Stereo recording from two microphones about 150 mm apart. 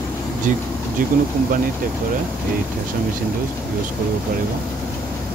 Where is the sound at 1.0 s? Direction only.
70° right (ahead or behind).